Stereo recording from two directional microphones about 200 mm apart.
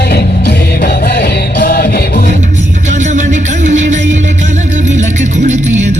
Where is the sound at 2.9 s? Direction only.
35° right (ahead or behind).